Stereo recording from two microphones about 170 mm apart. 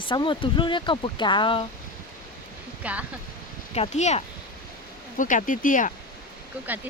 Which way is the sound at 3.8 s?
40° left (ahead or behind).